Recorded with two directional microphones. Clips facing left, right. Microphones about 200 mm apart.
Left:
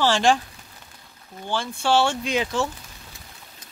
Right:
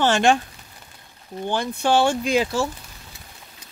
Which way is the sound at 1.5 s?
20° right (ahead or behind).